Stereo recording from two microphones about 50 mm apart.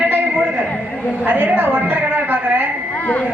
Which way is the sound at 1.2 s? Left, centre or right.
Right.